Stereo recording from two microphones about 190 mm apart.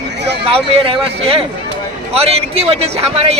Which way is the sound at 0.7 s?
30° right (ahead or behind).